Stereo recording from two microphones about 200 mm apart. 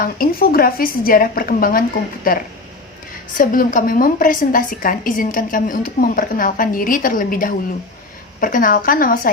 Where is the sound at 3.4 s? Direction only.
45° left (ahead or behind).